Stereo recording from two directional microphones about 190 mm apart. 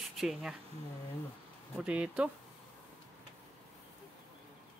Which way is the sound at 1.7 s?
5° right (ahead or behind).